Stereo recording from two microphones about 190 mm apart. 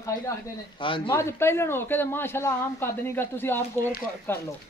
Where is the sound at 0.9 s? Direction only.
25° left (ahead or behind).